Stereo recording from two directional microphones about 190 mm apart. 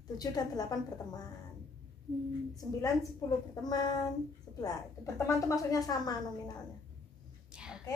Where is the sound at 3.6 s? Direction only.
20° left (ahead or behind).